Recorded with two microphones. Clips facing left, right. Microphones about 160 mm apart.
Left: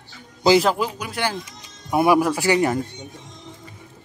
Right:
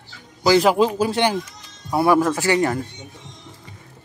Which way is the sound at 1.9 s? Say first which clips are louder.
Even; 15° left (ahead or behind).